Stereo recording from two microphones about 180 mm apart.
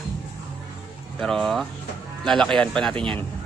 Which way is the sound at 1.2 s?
Centre (ahead or behind).